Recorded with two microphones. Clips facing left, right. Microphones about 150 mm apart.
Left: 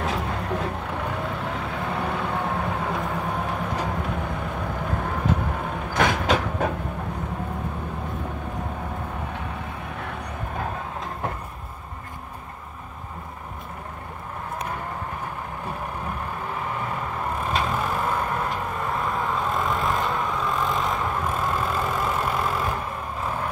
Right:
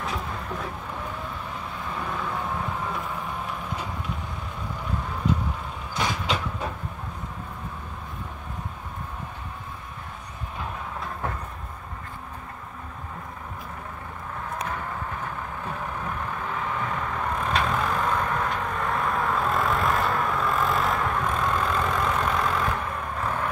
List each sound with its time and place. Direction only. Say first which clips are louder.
0.0 s vehicle: left 5 dB; 75° left (ahead or behind)
17.5 s vehicle: even; 5° left (ahead or behind)
22.4 s vehicle: even; 25° left (ahead or behind)
23.2 s vehicle: even; 10° left (ahead or behind)